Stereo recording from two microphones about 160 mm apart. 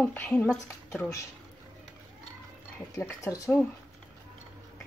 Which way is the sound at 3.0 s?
15° left (ahead or behind).